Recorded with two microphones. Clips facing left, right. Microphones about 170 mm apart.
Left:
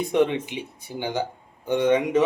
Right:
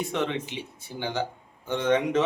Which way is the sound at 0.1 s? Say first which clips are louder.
Left 7 dB; 15° left (ahead or behind).